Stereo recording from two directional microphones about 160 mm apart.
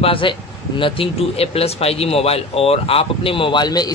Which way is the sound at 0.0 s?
35° left (ahead or behind).